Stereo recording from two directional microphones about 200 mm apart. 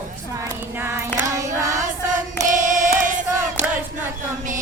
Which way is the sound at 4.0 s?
40° right (ahead or behind).